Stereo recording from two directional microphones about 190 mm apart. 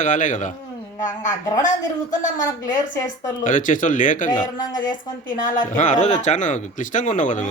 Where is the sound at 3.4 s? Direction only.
45° left (ahead or behind).